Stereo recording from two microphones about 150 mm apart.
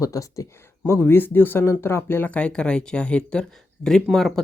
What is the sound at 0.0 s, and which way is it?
Speech, 20° left (ahead or behind).